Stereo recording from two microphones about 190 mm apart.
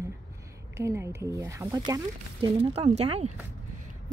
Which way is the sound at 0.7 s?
15° right (ahead or behind).